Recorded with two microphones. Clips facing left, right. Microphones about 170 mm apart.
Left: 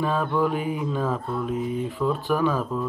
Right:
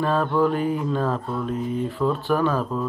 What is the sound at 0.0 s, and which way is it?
Speech, centre (ahead or behind).